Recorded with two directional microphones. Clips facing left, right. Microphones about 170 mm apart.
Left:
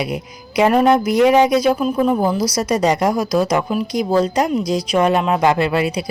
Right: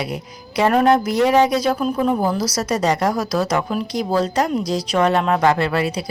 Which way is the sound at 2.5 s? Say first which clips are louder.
Left 3 dB; 15° left (ahead or behind).